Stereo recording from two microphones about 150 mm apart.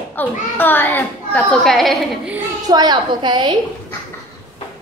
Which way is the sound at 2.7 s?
30° right (ahead or behind).